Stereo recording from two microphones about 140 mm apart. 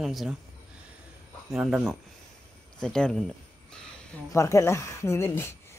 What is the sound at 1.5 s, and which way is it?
Speech, 5° right (ahead or behind).